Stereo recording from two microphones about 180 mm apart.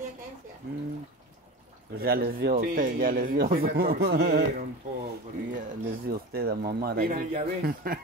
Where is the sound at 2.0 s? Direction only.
55° right (ahead or behind).